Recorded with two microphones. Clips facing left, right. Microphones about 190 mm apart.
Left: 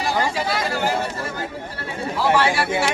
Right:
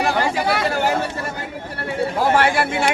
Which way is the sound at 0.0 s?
65° right (ahead or behind).